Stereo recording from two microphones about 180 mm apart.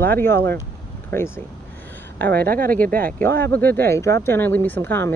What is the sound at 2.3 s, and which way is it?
Speech, 55° right (ahead or behind).